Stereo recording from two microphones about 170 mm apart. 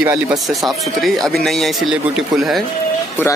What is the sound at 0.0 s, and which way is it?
Speech, 20° right (ahead or behind).